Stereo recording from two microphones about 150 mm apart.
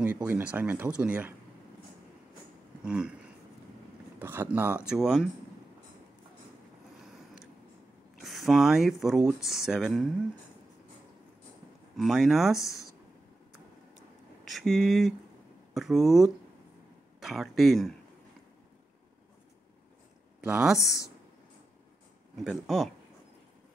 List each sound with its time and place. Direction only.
0.0 s speech: 10° right (ahead or behind)
2.8 s speech: 5° right (ahead or behind)
4.2 s speech: 15° right (ahead or behind)
8.2 s speech: centre (ahead or behind)
12.0 s speech: centre (ahead or behind)
12.5 s speech: 20° left (ahead or behind)
14.5 s speech: centre (ahead or behind)
20.3 s speech: 5° right (ahead or behind)
22.3 s speech: centre (ahead or behind)